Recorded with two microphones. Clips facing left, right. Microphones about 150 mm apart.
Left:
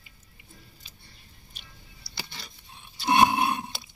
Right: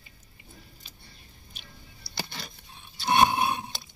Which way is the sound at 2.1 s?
55° right (ahead or behind).